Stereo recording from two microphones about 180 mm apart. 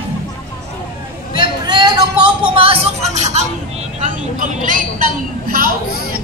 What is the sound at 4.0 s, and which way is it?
A woman's voice, 45° right (ahead or behind).